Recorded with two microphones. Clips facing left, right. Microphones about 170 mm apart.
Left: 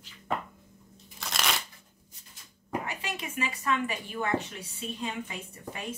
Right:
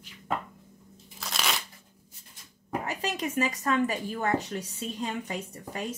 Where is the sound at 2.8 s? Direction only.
40° right (ahead or behind).